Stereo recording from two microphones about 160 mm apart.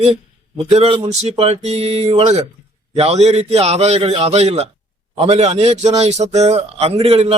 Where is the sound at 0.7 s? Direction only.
35° right (ahead or behind).